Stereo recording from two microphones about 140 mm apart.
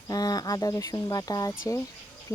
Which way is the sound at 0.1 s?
25° left (ahead or behind).